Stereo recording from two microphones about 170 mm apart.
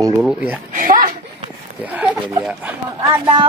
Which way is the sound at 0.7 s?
50° right (ahead or behind).